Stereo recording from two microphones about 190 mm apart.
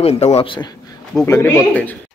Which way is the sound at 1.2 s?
15° left (ahead or behind).